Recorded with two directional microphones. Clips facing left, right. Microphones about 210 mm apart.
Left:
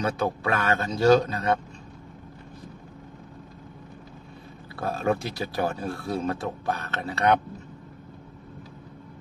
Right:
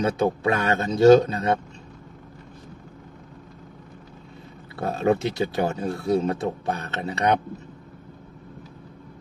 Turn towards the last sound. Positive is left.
turn(degrees=-20)  # may be behind; listen again after turning